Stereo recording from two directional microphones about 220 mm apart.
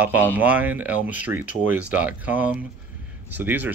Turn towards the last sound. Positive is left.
turn(degrees=-10)  # may be behind; listen again after turning